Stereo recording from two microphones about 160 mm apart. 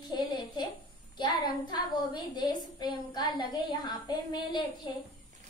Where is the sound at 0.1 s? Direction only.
25° left (ahead or behind).